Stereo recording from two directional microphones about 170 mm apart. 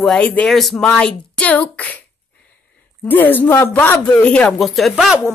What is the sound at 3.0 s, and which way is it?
A woman's voice, 10° left (ahead or behind).